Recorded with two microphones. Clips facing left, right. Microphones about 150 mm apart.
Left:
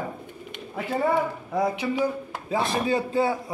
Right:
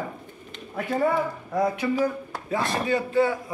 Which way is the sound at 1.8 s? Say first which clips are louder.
Right 2 dB; 10° left (ahead or behind).